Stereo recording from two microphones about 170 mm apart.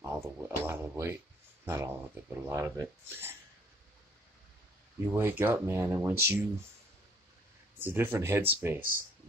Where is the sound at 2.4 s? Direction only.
15° right (ahead or behind).